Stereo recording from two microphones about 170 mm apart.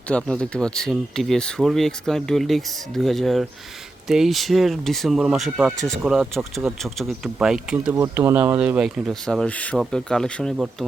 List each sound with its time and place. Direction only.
0.1 s speech: 5° left (ahead or behind)
7.9 s speech: 15° right (ahead or behind); by 10.5 s 5° left (ahead or behind)